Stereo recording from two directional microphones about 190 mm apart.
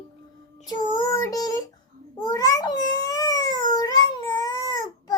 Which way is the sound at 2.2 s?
15° left (ahead or behind).